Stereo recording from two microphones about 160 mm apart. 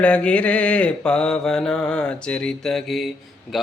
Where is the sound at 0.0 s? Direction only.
5° left (ahead or behind).